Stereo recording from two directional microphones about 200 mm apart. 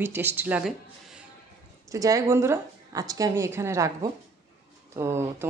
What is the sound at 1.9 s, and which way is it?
Speech, 15° right (ahead or behind).